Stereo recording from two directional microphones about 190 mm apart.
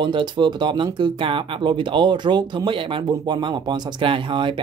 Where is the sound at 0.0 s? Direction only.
25° right (ahead or behind).